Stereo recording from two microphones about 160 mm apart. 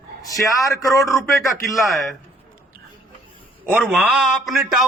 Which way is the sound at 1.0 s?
Centre (ahead or behind).